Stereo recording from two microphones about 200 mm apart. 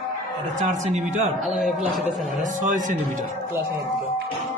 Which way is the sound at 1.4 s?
Centre (ahead or behind).